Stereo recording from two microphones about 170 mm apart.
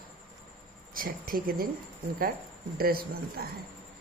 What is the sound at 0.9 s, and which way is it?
Speech, 55° right (ahead or behind).